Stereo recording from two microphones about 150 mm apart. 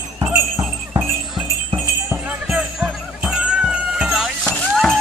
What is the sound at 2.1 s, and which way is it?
Music, 10° right (ahead or behind).